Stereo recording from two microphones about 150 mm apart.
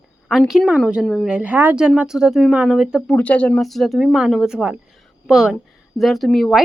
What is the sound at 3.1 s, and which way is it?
A woman's voice, 10° left (ahead or behind).